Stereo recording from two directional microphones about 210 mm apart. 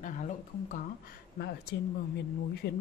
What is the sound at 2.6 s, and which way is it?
Speech, 50° left (ahead or behind).